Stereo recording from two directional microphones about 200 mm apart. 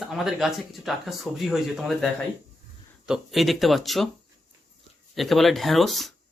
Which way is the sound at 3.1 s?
Centre (ahead or behind).